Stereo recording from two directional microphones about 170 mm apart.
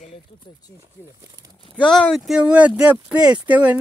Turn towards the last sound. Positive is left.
turn(degrees=-10)  # may be behind; listen again after turning